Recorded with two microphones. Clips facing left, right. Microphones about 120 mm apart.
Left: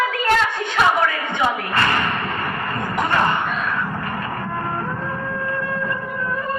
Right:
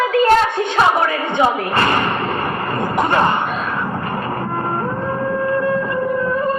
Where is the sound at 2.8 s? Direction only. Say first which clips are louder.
Right 4 dB; 30° right (ahead or behind).